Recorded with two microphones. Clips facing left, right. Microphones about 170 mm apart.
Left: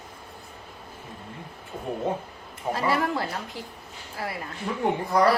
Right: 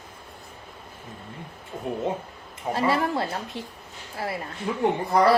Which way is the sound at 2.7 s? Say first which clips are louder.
Right 1 dB; 25° right (ahead or behind).